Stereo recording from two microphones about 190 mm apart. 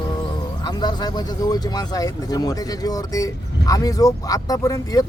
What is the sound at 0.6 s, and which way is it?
Speech, 20° left (ahead or behind).